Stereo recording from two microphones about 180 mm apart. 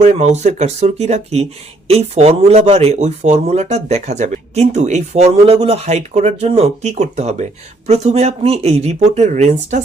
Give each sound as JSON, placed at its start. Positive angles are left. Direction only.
{"t": 0.0, "sound": "speech", "side_deg": -40}